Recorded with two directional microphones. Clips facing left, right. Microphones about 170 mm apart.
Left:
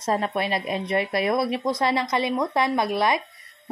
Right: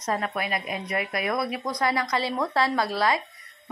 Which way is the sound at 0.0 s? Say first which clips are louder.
Left 4 dB; 30° left (ahead or behind).